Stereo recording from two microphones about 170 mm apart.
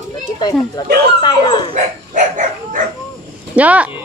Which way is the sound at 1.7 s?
50° right (ahead or behind).